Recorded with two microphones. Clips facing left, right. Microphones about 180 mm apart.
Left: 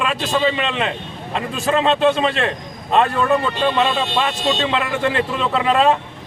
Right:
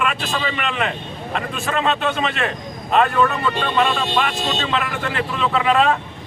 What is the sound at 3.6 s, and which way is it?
Speech, 25° left (ahead or behind).